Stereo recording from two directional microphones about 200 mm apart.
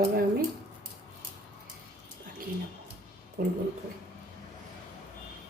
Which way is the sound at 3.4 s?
45° right (ahead or behind).